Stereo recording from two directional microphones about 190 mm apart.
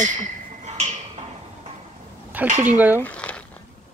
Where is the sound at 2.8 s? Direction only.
10° right (ahead or behind).